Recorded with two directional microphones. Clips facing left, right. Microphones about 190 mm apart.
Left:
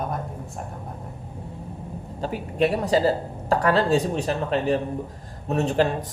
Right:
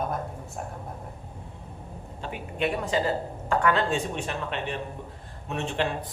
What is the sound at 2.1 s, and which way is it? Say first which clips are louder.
Speech: left 8 dB; 40° left (ahead or behind).